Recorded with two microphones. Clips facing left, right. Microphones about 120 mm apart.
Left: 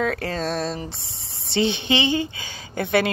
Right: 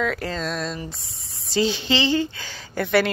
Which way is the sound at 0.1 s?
30° left (ahead or behind).